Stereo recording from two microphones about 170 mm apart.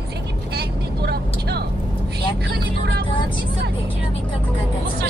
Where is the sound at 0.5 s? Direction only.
70° right (ahead or behind).